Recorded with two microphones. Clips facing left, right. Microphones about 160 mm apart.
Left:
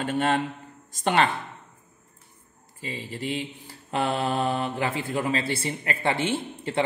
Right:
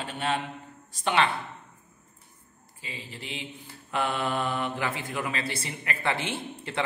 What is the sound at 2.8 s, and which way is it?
Mantra, 40° left (ahead or behind).